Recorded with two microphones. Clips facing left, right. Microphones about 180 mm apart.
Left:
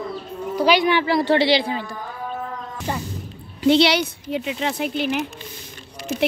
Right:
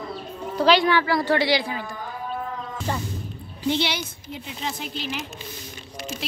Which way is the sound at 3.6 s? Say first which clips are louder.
Left 9 dB; 75° left (ahead or behind).